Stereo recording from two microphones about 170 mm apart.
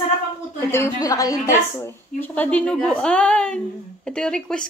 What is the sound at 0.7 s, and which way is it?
A woman's voice, 15° left (ahead or behind).